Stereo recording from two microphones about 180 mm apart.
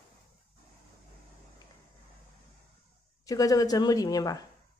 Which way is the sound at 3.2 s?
20° left (ahead or behind).